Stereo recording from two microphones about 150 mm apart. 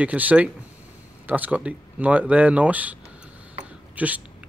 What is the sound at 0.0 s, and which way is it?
Speech, 10° right (ahead or behind).